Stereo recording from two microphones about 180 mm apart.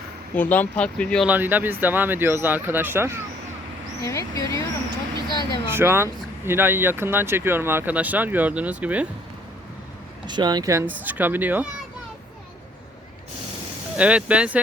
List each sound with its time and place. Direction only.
0.3 s speech: 10° left (ahead or behind)
1.3 s speech: 10° right (ahead or behind)
4.0 s speech: 15° left (ahead or behind)
5.6 s speech: 15° right (ahead or behind)
10.2 s speech: 25° right (ahead or behind)
13.9 s speech: 5° right (ahead or behind)